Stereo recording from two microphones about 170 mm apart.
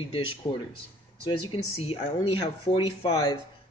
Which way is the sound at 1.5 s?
35° left (ahead or behind).